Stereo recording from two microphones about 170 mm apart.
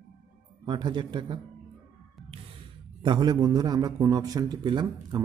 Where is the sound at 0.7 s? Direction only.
25° right (ahead or behind).